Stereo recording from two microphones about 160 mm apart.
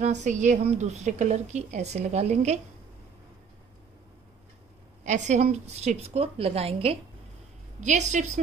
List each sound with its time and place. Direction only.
0.0 s a woman's voice: 45° right (ahead or behind)
5.0 s a woman's voice: 45° right (ahead or behind)
7.8 s a woman's voice: 50° right (ahead or behind)